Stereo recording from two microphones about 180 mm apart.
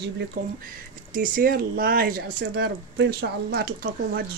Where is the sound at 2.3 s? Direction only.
70° right (ahead or behind).